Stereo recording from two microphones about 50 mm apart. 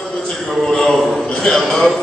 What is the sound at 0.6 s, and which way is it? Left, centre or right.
A man's voice, centre.